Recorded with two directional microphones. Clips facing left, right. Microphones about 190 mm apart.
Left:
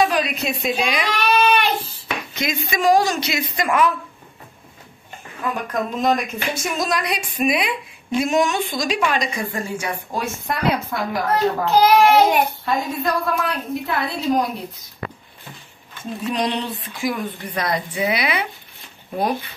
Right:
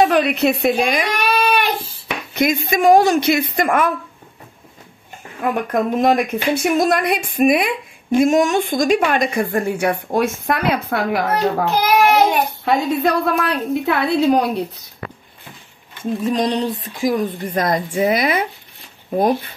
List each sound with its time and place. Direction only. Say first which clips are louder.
0.0 s a woman's voice: right 5 dB; 60° right (ahead or behind)
1.2 s a sound: left 2 dB; 10° right (ahead or behind)
2.3 s a woman's voice: right 8 dB; 50° right (ahead or behind)
5.4 s a woman's voice: right 5 dB; 55° right (ahead or behind)
16.3 s a woman's voice: right 4 dB; 45° right (ahead or behind)